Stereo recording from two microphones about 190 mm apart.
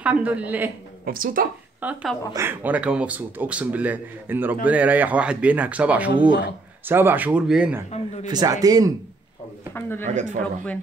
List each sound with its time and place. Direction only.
0.0 s speech: 5° right (ahead or behind)
1.0 s speech: 50° right (ahead or behind)
1.8 s speech: 10° right (ahead or behind)
7.9 s speech: 35° left (ahead or behind)
8.3 s speech: 20° right (ahead or behind)
9.8 s speech: 10° left (ahead or behind)
10.0 s speech: 40° right (ahead or behind)